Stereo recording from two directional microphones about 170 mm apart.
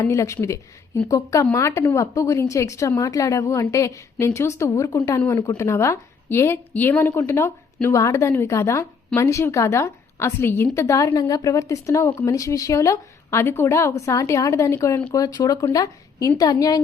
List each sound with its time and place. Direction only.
0.0 s a woman's voice: 15° left (ahead or behind)